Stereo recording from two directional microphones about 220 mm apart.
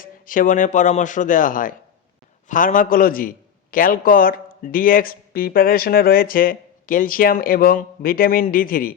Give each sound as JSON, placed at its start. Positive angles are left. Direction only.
{"t": 0.0, "sound": "a man's voice", "side_deg": 40}